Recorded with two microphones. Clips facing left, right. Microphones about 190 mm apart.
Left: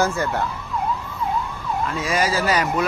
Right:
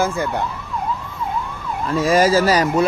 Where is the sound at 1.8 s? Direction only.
40° right (ahead or behind).